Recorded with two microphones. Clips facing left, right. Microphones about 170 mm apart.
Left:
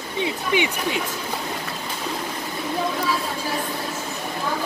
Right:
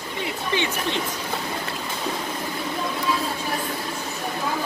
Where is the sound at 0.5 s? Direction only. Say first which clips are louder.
Left 2 dB; 15° left (ahead or behind).